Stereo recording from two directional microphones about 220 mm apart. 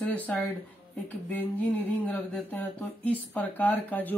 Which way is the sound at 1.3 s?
10° left (ahead or behind).